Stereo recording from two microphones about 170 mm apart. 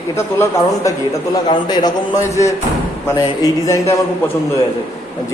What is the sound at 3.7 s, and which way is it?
Speech, 15° left (ahead or behind).